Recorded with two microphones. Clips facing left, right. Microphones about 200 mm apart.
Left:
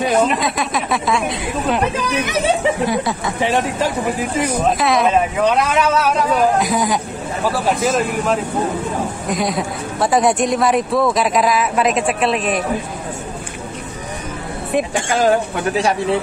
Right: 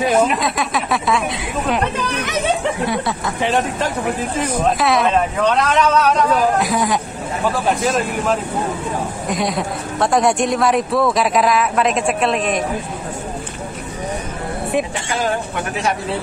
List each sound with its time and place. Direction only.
0.0 s speech: centre (ahead or behind)
2.8 s speech: centre (ahead or behind)
4.4 s speech: centre (ahead or behind)
15.0 s speech: 40° left (ahead or behind)